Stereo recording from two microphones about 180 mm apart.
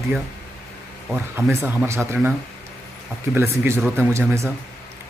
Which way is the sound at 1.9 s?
15° right (ahead or behind).